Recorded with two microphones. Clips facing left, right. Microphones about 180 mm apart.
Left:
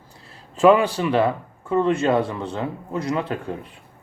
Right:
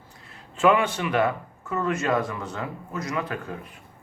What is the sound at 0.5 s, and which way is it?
Speech, 35° left (ahead or behind).